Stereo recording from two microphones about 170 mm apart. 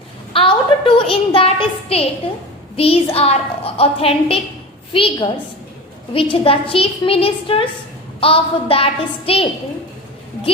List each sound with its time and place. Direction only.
0.3 s a woman's voice: 30° left (ahead or behind)
6.3 s a woman's voice: 30° left (ahead or behind)